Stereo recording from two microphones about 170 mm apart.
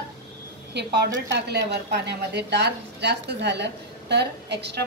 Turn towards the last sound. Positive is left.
turn(degrees=-80)